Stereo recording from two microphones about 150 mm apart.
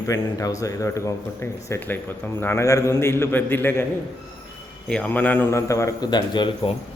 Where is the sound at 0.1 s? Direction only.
20° left (ahead or behind).